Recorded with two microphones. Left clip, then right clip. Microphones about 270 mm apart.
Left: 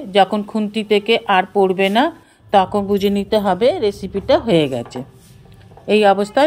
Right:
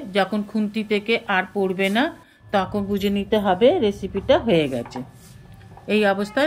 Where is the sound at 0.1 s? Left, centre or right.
Centre.